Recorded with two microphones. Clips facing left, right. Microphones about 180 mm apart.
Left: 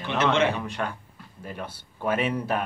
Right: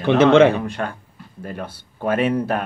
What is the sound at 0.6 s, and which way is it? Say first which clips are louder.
Speech: right 5 dB; 45° right (ahead or behind).